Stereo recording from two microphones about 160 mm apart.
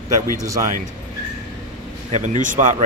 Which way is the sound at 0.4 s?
20° right (ahead or behind).